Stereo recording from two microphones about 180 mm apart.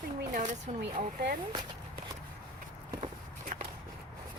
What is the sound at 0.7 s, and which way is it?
Speech, 40° right (ahead or behind).